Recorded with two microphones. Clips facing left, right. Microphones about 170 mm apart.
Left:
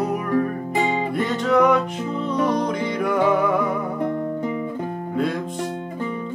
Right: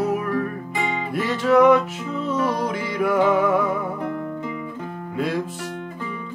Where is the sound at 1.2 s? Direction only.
5° right (ahead or behind).